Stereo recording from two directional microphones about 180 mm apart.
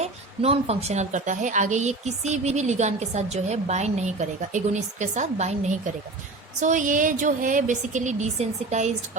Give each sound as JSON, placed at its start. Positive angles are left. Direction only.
{"t": 0.0, "sound": "a woman's voice", "side_deg": -35}